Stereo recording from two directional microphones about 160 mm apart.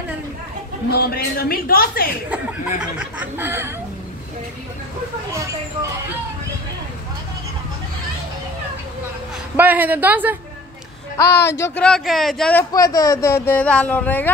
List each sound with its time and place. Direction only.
0.8 s a woman's voice: 80° left
3.0 s a sound: 10° right (ahead or behind)
9.6 s a sound: 10° right (ahead or behind)
11.2 s speech: 90° left
11.5 s speech: 15° left (ahead or behind)
11.8 s speech: centre (ahead or behind)
12.7 s speech: 20° left (ahead or behind)